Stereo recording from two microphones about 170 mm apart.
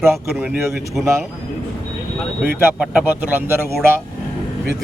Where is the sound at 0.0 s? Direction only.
10° right (ahead or behind).